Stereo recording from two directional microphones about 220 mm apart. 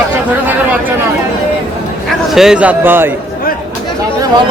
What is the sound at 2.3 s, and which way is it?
Speech, centre (ahead or behind).